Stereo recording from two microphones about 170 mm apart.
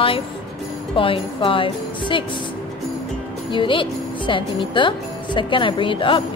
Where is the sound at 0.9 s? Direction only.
30° left (ahead or behind).